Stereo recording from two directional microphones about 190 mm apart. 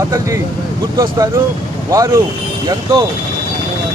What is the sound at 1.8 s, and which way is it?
Speech, 15° right (ahead or behind).